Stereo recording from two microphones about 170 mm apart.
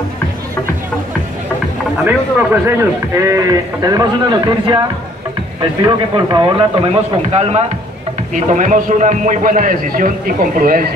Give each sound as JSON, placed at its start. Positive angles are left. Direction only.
{"t": 2.6, "sound": "a man's voice", "side_deg": -15}